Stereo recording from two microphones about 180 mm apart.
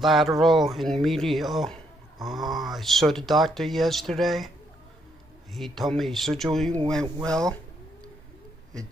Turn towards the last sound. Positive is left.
turn(degrees=5)  # may be behind; listen again after turning